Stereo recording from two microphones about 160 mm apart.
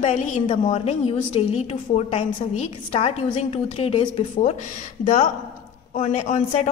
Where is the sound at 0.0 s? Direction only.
50° left (ahead or behind).